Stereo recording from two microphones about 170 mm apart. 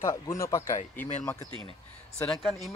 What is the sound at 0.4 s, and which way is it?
Speech, 20° left (ahead or behind).